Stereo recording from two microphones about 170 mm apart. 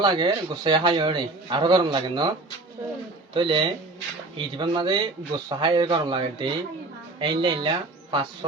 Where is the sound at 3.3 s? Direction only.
30° right (ahead or behind).